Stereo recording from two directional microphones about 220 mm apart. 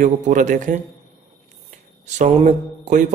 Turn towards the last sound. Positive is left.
turn(degrees=-35)  # may be behind; listen again after turning